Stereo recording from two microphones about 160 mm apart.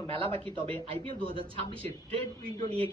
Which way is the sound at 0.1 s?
35° right (ahead or behind).